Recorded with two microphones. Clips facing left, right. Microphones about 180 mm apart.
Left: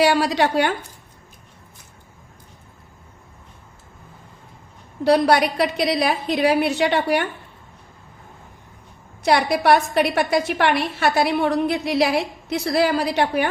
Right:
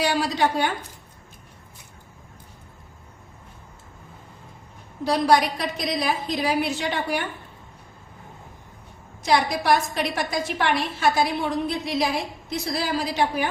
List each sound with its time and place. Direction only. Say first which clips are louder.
0.0 s a woman's voice: left 5 dB; 70° left (ahead or behind)
5.0 s a woman's voice: left 4 dB; 65° left (ahead or behind)
9.2 s a woman's voice: left 4 dB; 65° left (ahead or behind)